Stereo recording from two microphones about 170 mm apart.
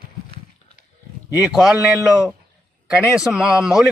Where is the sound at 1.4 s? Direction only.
Centre (ahead or behind).